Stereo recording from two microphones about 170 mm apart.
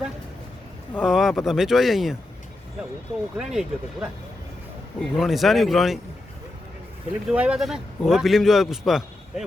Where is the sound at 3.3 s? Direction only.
5° right (ahead or behind).